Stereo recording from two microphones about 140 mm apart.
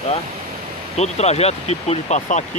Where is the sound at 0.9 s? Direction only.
50° left (ahead or behind).